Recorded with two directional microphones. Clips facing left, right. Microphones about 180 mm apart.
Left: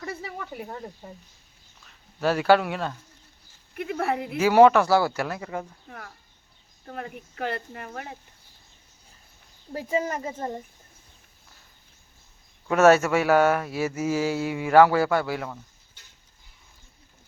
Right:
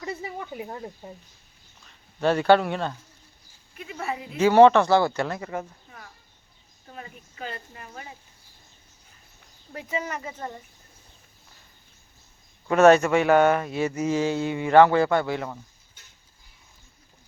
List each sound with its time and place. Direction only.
0.0 s a sound: 15° right (ahead or behind)
0.5 s speech: 5° right (ahead or behind)
1.9 s speech: 5° left (ahead or behind)
3.8 s speech: 60° left (ahead or behind)
4.4 s speech: 10° left (ahead or behind)
6.8 s speech: 60° left (ahead or behind)
9.7 s speech: 40° left (ahead or behind)
12.6 s speech: 5° left (ahead or behind)